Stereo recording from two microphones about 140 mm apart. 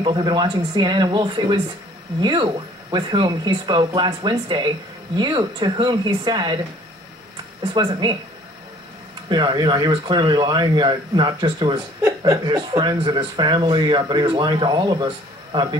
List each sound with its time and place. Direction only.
0.0 s speech: 35° right (ahead or behind)
7.7 s speech: 30° right (ahead or behind)
9.3 s speech: 30° right (ahead or behind)